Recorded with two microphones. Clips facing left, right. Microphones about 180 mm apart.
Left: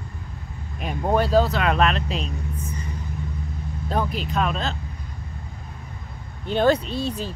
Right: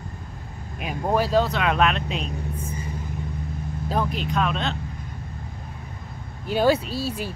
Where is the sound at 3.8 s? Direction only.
Centre (ahead or behind).